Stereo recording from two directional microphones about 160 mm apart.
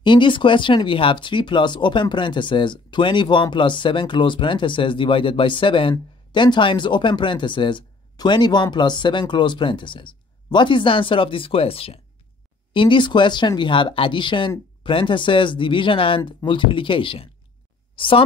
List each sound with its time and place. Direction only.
0.0 s speech: 30° left (ahead or behind)
16.2 s speech: 20° left (ahead or behind)
16.4 s speech: 30° left (ahead or behind)